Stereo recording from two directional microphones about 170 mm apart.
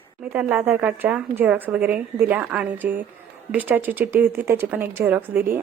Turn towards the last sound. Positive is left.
turn(degrees=-10)  # may be behind; listen again after turning